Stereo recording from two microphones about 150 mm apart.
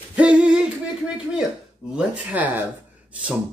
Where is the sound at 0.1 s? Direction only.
5° right (ahead or behind).